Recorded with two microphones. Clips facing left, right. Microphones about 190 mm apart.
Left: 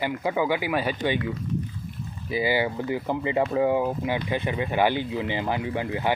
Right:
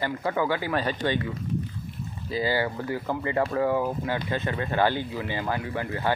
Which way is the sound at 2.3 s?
15° left (ahead or behind).